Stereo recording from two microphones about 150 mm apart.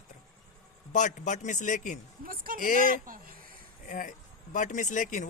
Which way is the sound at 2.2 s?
70° right (ahead or behind).